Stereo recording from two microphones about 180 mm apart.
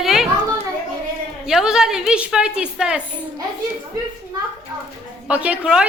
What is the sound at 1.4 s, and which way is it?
A woman's voice, 5° right (ahead or behind).